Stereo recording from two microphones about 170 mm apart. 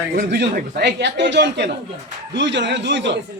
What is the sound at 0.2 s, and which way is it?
Speech, 70° right (ahead or behind).